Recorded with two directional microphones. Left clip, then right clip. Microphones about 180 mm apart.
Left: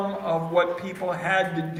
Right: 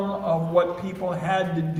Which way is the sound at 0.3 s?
55° right (ahead or behind).